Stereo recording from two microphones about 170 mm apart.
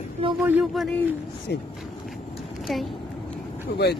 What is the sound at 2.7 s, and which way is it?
Speech, centre (ahead or behind).